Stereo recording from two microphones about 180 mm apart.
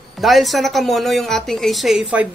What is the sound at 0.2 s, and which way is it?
A woman's voice, centre (ahead or behind).